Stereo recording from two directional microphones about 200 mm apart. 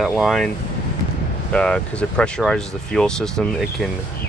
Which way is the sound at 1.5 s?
5° left (ahead or behind).